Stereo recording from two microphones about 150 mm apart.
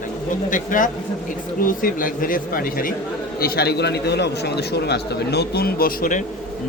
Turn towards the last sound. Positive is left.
turn(degrees=65)  # may be behind; listen again after turning